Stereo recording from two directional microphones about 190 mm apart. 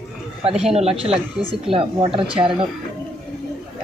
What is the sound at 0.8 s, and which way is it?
Speech, 30° right (ahead or behind).